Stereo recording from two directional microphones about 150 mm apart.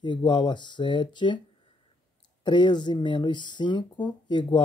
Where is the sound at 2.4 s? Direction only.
30° left (ahead or behind).